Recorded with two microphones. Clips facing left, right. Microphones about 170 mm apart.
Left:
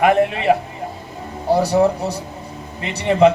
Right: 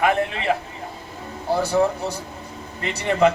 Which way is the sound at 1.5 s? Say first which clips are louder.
Left 4 dB; 35° left (ahead or behind).